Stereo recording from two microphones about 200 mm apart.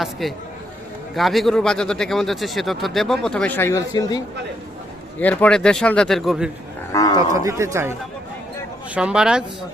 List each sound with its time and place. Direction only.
0.0 s speech: centre (ahead or behind); by 4.2 s 15° left (ahead or behind)
5.2 s speech: 5° left (ahead or behind)
6.9 s a man's voice: 20° left (ahead or behind)
7.2 s speech: 15° right (ahead or behind)
9.0 s speech: 5° right (ahead or behind)